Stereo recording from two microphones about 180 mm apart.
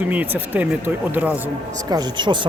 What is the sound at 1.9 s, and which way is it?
Speech, 25° right (ahead or behind).